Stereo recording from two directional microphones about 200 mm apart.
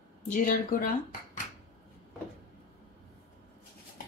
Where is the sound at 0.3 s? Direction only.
45° left (ahead or behind).